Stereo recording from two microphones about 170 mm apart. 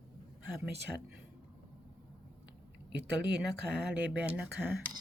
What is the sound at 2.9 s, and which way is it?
Speech, 85° right.